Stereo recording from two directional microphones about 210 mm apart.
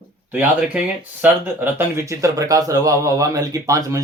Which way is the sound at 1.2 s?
10° right (ahead or behind).